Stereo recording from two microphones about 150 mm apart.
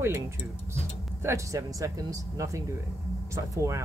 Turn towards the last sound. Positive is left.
turn(degrees=-20)  # may be behind; listen again after turning